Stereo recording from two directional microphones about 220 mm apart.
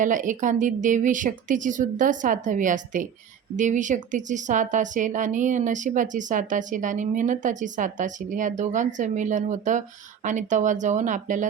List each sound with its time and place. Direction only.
0.0 s a woman's voice: 35° right (ahead or behind)